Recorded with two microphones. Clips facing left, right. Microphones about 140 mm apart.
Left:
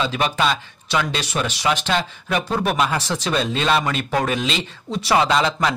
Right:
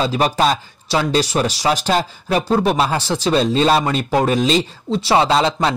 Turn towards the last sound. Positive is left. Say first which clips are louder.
# right 3 dB
turn(degrees=-30)  # may be behind; listen again after turning